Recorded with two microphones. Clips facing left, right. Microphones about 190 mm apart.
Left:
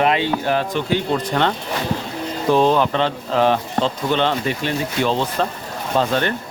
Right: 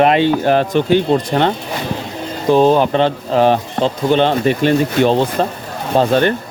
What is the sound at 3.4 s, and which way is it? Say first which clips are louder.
Speech: right 4 dB; 45° right (ahead or behind).